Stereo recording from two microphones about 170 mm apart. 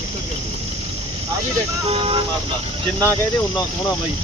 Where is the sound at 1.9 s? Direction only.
35° right (ahead or behind).